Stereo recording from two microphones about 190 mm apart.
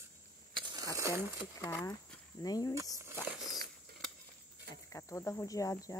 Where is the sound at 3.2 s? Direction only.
Centre (ahead or behind).